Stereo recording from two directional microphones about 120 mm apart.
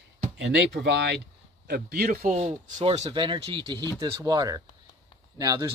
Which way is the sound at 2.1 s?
70° right (ahead or behind).